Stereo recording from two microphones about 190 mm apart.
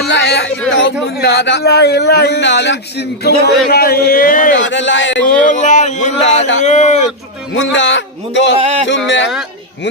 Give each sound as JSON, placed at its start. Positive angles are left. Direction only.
{"t": 0.1, "sound": "a man's voice", "side_deg": 65}
{"t": 4.6, "sound": "speech", "side_deg": 75}
{"t": 5.4, "sound": "speech", "side_deg": 40}
{"t": 7.5, "sound": "speech", "side_deg": 75}
{"t": 8.5, "sound": "speech", "side_deg": -35}
{"t": 9.0, "sound": "speech", "side_deg": 70}